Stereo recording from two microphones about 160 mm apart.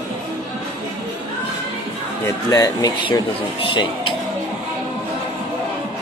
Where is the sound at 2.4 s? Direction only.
20° left (ahead or behind).